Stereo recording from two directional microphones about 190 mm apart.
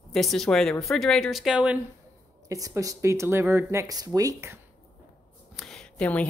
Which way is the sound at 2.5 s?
15° right (ahead or behind).